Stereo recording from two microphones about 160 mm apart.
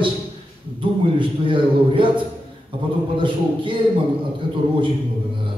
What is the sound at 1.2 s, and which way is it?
Speech, 30° right (ahead or behind).